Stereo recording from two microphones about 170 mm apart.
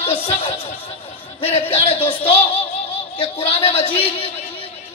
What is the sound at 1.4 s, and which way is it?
A man's voice, 35° left (ahead or behind).